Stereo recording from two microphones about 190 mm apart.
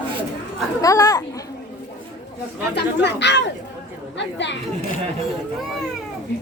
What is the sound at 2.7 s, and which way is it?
Speech, 65° left (ahead or behind).